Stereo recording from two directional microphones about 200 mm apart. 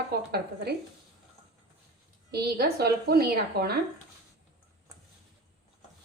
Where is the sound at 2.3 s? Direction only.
55° right (ahead or behind).